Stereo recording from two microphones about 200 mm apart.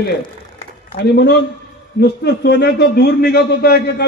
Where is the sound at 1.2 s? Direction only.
55° left (ahead or behind).